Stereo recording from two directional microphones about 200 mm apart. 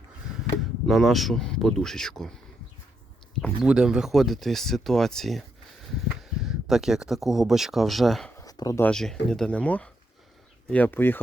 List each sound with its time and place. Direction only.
0.9 s speech: centre (ahead or behind)
3.4 s speech: 5° right (ahead or behind)
8.4 s a sound: 20° left (ahead or behind)
8.9 s speech: centre (ahead or behind)